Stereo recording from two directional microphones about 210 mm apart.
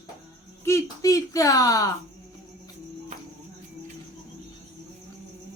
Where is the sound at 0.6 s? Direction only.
15° left (ahead or behind).